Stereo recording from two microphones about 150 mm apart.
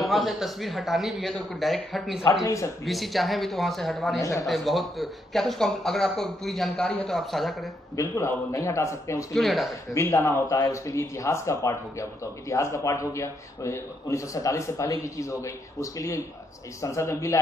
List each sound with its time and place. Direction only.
0.0 s speech: centre (ahead or behind)
2.4 s speech: 20° left (ahead or behind)
2.8 s speech: centre (ahead or behind)
4.2 s speech: 20° left (ahead or behind)
4.5 s speech: centre (ahead or behind)
7.9 s speech: 20° left (ahead or behind)
9.3 s speech: centre (ahead or behind)
9.9 s speech: 15° left (ahead or behind)